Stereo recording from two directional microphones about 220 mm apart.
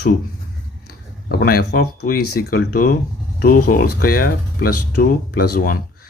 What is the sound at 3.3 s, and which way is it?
Speech, 40° left (ahead or behind).